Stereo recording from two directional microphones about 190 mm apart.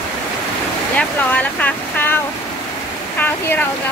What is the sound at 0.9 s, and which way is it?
Speech, 10° left (ahead or behind).